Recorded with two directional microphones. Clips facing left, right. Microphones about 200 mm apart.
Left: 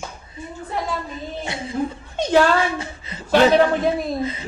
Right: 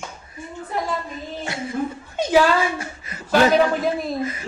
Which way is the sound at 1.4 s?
20° left (ahead or behind).